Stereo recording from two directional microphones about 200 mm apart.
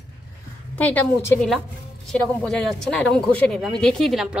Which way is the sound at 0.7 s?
10° left (ahead or behind).